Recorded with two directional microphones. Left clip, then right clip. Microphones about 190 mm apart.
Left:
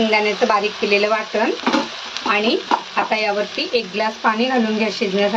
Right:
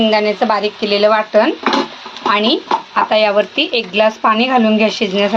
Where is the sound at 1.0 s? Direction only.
15° right (ahead or behind).